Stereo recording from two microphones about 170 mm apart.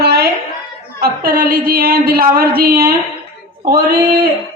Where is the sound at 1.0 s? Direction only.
60° right (ahead or behind).